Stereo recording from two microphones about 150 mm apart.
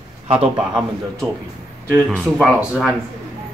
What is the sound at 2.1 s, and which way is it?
Speech, 5° left (ahead or behind).